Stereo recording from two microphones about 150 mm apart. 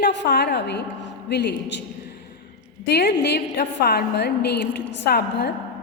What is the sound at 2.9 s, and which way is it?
A woman's voice, 90° left.